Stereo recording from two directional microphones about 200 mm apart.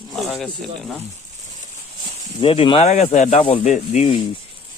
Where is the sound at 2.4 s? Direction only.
30° left (ahead or behind).